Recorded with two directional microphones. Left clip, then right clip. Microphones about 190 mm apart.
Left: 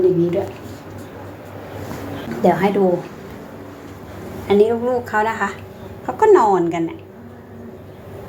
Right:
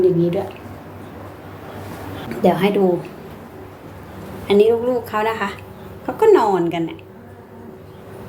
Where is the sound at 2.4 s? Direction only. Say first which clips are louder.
Left 1 dB; 5° right (ahead or behind).